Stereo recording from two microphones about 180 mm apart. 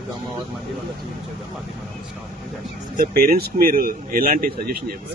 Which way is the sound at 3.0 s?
55° right (ahead or behind).